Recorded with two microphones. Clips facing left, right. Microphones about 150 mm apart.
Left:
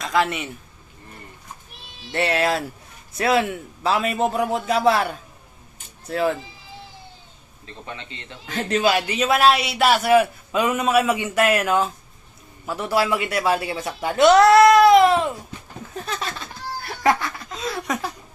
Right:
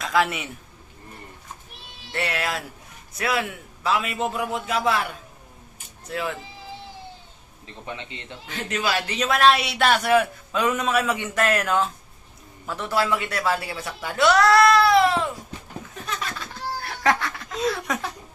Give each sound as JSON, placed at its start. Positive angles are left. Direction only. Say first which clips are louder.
{"t": 0.0, "sound": "a man's voice", "louder": "left 1 dB", "side_deg": 0}
{"t": 2.1, "sound": "a man's voice", "louder": "left 6 dB", "side_deg": 30}
{"t": 6.1, "sound": "a man's voice", "louder": "left 7 dB", "side_deg": 40}
{"t": 7.9, "sound": "a man's voice", "louder": "right 2 dB", "side_deg": -15}
{"t": 8.4, "sound": "a man's voice", "louder": "left 7 dB", "side_deg": 40}
{"t": 8.8, "sound": "speech", "louder": "left 5 dB", "side_deg": 20}
{"t": 9.0, "sound": "speech", "louder": "left 2 dB", "side_deg": 5}
{"t": 16.0, "sound": "laughter", "louder": "left 2 dB", "side_deg": 30}
{"t": 17.0, "sound": "laughter", "louder": "left 3 dB", "side_deg": 5}